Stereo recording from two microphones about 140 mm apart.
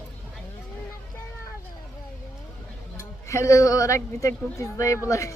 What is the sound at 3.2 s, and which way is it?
Speech, 20° left (ahead or behind).